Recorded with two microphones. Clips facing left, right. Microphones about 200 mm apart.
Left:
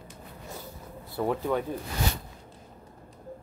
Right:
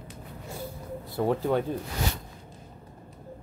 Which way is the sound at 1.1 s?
35° right (ahead or behind).